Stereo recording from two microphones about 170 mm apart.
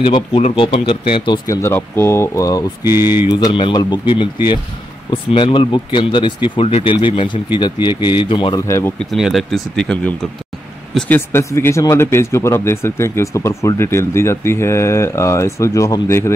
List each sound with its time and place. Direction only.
0.0 s speech: 30° left (ahead or behind)
1.6 s speech: 15° left (ahead or behind)
2.8 s speech: 15° right (ahead or behind)
3.3 s speech: 30° left (ahead or behind)
5.1 s speech: 30° left (ahead or behind)
8.6 s speech: 15° left (ahead or behind)
9.1 s speech: centre (ahead or behind); by 16.3 s 15° left (ahead or behind)